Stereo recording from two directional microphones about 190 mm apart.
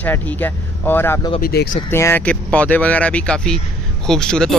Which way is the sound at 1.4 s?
55° left (ahead or behind).